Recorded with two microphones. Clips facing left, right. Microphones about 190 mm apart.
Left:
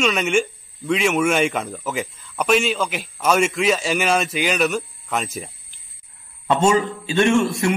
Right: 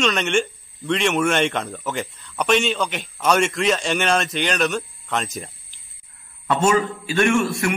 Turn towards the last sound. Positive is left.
turn(degrees=20)  # may be behind; listen again after turning